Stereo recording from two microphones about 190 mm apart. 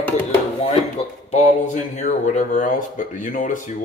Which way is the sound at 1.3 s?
35° left (ahead or behind).